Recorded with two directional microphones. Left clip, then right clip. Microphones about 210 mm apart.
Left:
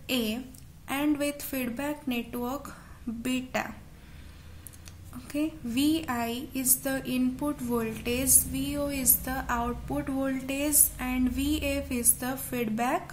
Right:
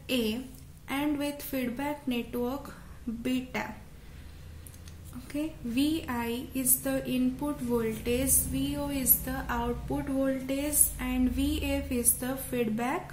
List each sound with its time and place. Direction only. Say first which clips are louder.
0.0 s a woman's voice: even; 30° left (ahead or behind)
5.3 s a woman's voice: left 3 dB; 30° left (ahead or behind)